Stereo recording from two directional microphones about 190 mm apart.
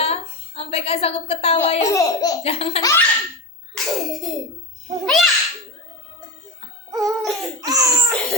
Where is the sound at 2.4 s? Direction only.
30° left (ahead or behind).